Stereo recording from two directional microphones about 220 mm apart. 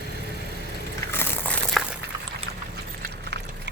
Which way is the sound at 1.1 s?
10° left (ahead or behind).